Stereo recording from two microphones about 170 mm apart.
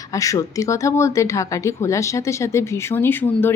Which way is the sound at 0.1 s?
20° left (ahead or behind).